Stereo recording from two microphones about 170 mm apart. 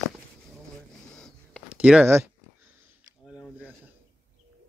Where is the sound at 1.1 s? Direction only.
5° left (ahead or behind).